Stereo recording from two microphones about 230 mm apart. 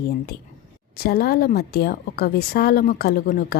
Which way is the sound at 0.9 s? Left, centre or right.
Left.